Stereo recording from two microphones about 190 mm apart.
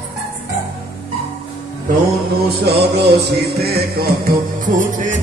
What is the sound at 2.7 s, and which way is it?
Music, 60° right (ahead or behind).